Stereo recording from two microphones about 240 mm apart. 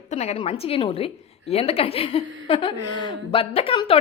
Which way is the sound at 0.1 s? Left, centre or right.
Left.